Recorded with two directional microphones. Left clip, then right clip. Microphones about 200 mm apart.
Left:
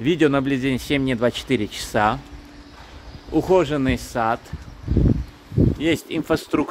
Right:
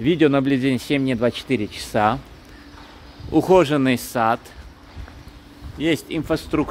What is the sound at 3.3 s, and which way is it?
Speech, 25° right (ahead or behind).